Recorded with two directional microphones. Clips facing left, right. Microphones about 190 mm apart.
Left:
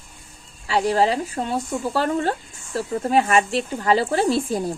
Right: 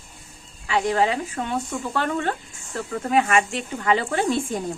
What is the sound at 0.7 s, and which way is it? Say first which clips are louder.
Speech: left 2 dB; 35° left (ahead or behind).